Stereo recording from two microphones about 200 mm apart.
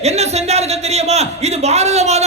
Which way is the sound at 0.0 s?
35° right (ahead or behind).